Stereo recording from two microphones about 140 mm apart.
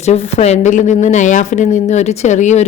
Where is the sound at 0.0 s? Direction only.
50° left (ahead or behind).